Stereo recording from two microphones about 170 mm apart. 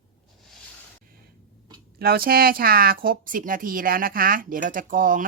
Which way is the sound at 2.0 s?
60° right (ahead or behind).